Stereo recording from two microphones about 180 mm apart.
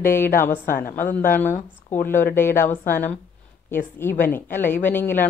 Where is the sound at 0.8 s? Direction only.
50° left (ahead or behind).